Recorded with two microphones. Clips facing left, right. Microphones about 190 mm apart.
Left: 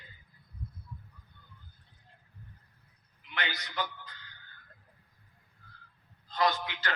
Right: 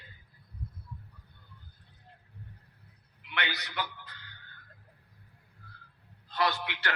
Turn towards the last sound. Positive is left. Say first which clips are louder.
# left 1 dB
turn(degrees=-65)  # may be behind; listen again after turning